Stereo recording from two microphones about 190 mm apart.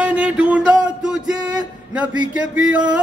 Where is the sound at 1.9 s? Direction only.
5° right (ahead or behind).